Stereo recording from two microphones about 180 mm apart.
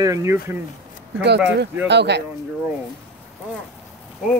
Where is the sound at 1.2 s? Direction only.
70° right (ahead or behind).